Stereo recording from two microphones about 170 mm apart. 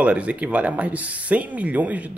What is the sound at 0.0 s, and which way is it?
Speech, 10° right (ahead or behind).